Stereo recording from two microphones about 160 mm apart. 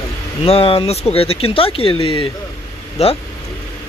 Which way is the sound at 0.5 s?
35° left (ahead or behind).